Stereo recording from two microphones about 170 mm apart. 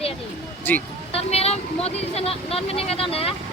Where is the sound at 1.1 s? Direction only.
40° left (ahead or behind).